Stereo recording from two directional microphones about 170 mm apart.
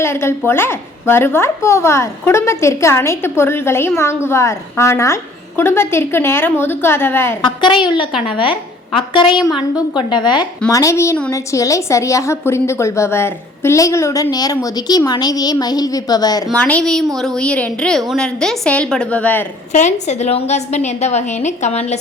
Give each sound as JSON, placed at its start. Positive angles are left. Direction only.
{"t": 0.0, "sound": "a woman's voice", "side_deg": 15}
{"t": 7.4, "sound": "a woman's voice", "side_deg": 25}
{"t": 9.5, "sound": "a woman's voice", "side_deg": -5}
{"t": 10.1, "sound": "a woman's voice", "side_deg": 25}
{"t": 16.6, "sound": "a woman's voice", "side_deg": 10}
{"t": 19.7, "sound": "a woman's voice", "side_deg": 45}